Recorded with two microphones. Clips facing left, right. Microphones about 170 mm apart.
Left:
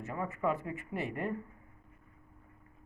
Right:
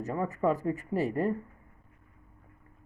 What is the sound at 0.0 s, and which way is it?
Speech, 35° right (ahead or behind).